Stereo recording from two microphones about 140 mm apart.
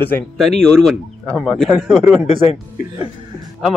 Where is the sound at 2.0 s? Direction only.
15° right (ahead or behind).